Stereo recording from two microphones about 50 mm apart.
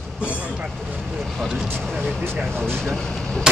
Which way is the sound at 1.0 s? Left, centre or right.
Centre.